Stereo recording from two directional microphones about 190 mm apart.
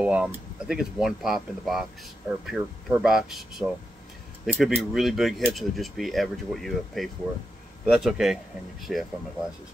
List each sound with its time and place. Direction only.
0.0 s speech: 5° right (ahead or behind)